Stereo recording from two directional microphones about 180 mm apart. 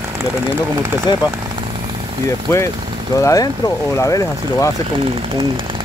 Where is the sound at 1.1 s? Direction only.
25° left (ahead or behind).